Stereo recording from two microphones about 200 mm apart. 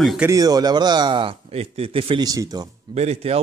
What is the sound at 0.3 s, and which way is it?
Speech, 20° right (ahead or behind).